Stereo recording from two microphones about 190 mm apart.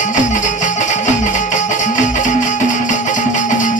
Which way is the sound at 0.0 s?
40° left (ahead or behind).